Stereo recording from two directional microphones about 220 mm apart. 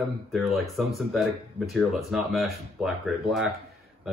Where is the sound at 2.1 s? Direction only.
Centre (ahead or behind).